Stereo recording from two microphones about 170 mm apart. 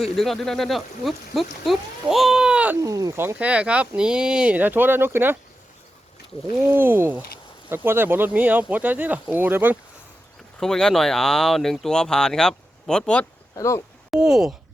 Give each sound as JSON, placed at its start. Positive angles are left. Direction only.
{"t": 0.0, "sound": "speech", "side_deg": 0}
{"t": 2.8, "sound": "speech", "side_deg": -20}
{"t": 6.6, "sound": "speech", "side_deg": -15}
{"t": 10.6, "sound": "speech", "side_deg": 5}
{"t": 13.6, "sound": "speech", "side_deg": 15}
{"t": 14.1, "sound": "speech", "side_deg": -5}